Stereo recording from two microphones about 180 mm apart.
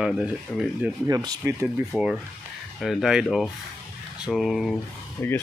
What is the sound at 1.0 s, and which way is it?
Speech, 20° right (ahead or behind).